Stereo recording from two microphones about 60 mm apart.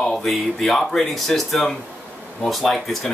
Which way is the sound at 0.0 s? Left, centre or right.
Centre.